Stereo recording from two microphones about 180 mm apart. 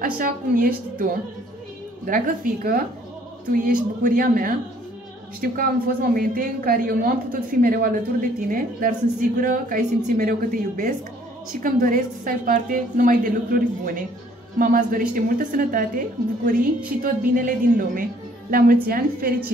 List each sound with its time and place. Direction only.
0.0 s a woman's voice: 55° right (ahead or behind)